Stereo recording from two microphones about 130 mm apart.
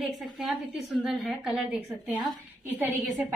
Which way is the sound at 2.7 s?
15° right (ahead or behind).